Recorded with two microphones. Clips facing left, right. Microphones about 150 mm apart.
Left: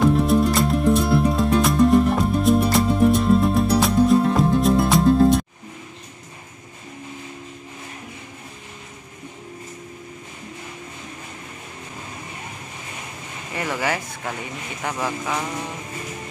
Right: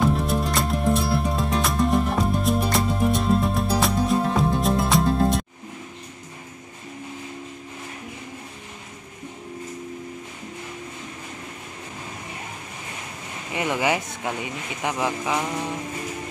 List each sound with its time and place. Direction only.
0.0 s music: centre (ahead or behind)
13.5 s speech: 15° right (ahead or behind)